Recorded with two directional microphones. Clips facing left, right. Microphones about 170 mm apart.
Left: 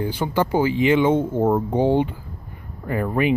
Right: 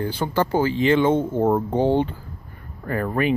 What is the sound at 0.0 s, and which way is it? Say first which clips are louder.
Speech: left 1 dB; 15° left (ahead or behind).